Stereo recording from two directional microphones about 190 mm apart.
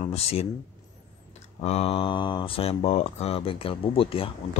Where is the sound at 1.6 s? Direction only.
35° left (ahead or behind).